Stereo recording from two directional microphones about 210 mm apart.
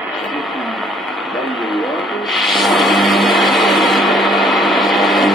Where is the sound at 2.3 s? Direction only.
Centre (ahead or behind).